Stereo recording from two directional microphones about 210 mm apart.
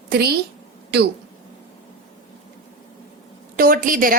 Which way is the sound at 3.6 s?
45° right (ahead or behind).